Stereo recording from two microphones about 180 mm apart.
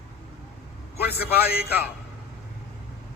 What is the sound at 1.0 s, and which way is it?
Speech, 60° left (ahead or behind).